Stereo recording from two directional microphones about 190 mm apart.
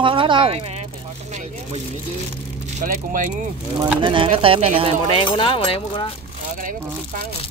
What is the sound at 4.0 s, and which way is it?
Speech, 25° right (ahead or behind).